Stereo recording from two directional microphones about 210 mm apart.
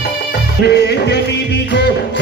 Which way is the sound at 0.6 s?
55° left (ahead or behind).